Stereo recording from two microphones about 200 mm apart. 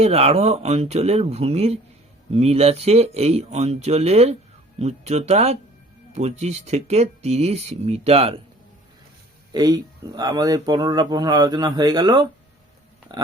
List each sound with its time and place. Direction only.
0.0 s speech: 30° right (ahead or behind)
9.5 s speech: 20° right (ahead or behind)